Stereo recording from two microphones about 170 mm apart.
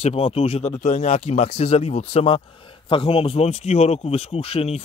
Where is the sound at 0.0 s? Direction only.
35° left (ahead or behind).